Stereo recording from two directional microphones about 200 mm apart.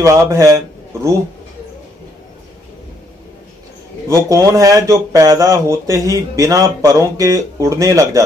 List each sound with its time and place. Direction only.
0.0 s speech: 15° right (ahead or behind)
4.1 s speech: 15° right (ahead or behind)